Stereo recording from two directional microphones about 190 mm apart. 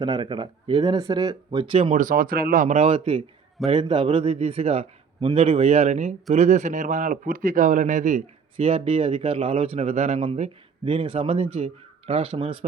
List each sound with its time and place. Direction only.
0.0 s a man's voice: 25° right (ahead or behind)
2.0 s a man's voice: 45° right (ahead or behind); by 12.5 s 30° right (ahead or behind)